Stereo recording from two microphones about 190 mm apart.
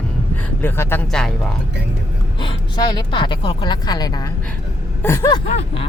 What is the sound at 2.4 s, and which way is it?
Speech, 25° left (ahead or behind).